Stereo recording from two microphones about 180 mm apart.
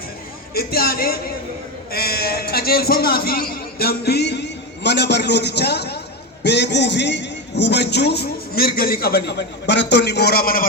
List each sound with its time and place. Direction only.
0.5 s a man's voice: 60° left (ahead or behind)